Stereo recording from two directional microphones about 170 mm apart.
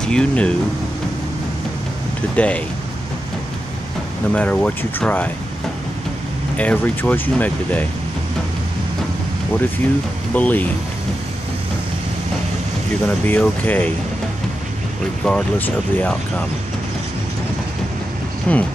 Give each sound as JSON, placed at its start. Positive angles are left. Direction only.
{"t": 0.0, "sound": "speech", "side_deg": 5}
{"t": 2.3, "sound": "speech", "side_deg": 5}
{"t": 4.3, "sound": "speech", "side_deg": 10}
{"t": 6.5, "sound": "speech", "side_deg": 10}
{"t": 10.3, "sound": "speech", "side_deg": 10}
{"t": 13.2, "sound": "speech", "side_deg": 10}
{"t": 15.2, "sound": "speech", "side_deg": 5}
{"t": 18.5, "sound": "speech", "side_deg": 10}